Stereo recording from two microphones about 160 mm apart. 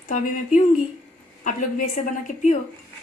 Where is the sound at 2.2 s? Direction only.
50° left (ahead or behind).